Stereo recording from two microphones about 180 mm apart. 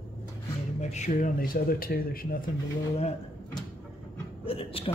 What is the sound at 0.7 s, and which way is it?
A man's voice, 40° left (ahead or behind).